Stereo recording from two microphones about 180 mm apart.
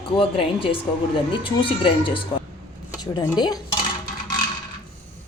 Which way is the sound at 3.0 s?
20° left (ahead or behind).